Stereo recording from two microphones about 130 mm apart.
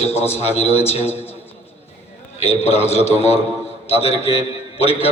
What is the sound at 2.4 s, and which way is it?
A man's voice, 50° left (ahead or behind).